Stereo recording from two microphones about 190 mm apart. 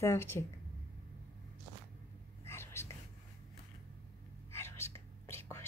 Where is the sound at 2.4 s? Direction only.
15° left (ahead or behind).